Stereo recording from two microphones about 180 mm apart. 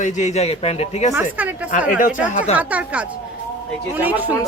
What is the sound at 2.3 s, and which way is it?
Speech, 45° left (ahead or behind).